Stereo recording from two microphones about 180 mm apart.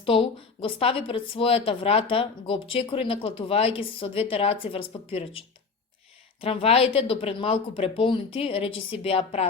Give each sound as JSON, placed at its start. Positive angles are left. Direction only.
{"t": 0.0, "sound": "a woman's voice", "side_deg": 30}
{"t": 6.4, "sound": "a woman's voice", "side_deg": 30}